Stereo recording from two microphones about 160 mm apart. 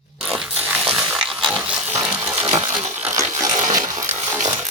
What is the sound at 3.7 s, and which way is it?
Electric shaver, 20° right (ahead or behind).